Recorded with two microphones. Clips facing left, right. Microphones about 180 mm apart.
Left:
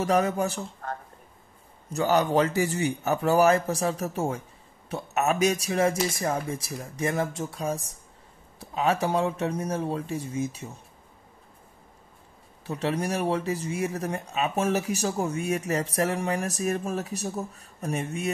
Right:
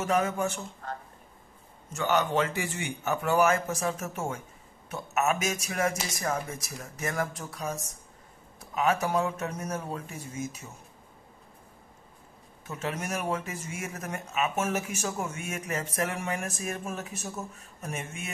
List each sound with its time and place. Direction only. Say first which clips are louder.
0.0 s speech: left 3 dB; 35° left (ahead or behind)
1.9 s speech: left 4 dB; 35° left (ahead or behind)
12.6 s speech: left 6 dB; 35° left (ahead or behind)